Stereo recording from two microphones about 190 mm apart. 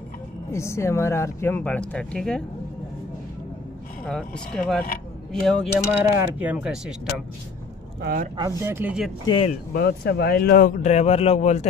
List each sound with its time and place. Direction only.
0.5 s speech: 15° left (ahead or behind)
4.0 s speech: 5° left (ahead or behind)
5.9 s speech: 10° right (ahead or behind)
8.0 s speech: 50° right (ahead or behind)
8.4 s speech: 15° right (ahead or behind)
9.2 s speech: 25° left (ahead or behind)
9.8 s speech: 55° left (ahead or behind)
10.8 s speech: 35° left (ahead or behind)